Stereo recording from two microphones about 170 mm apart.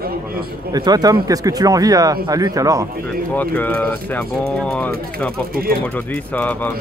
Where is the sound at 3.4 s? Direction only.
10° left (ahead or behind).